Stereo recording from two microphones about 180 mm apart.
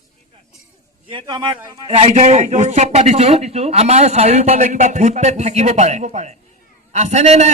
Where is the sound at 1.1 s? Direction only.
25° right (ahead or behind).